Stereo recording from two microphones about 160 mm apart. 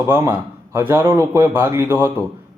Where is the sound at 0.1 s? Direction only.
15° right (ahead or behind).